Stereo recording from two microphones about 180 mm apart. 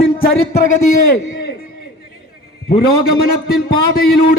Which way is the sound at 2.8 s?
60° left (ahead or behind).